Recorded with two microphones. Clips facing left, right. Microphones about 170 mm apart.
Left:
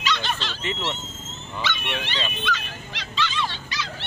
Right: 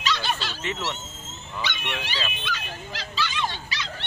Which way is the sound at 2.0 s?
10° right (ahead or behind).